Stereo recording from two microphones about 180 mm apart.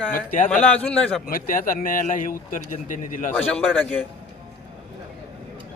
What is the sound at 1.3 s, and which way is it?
Speech, 50° left (ahead or behind).